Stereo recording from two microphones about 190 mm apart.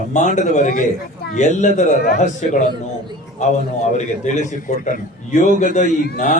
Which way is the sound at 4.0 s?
40° left (ahead or behind).